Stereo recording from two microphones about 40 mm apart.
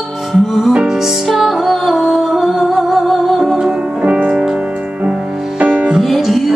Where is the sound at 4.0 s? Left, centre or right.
Right.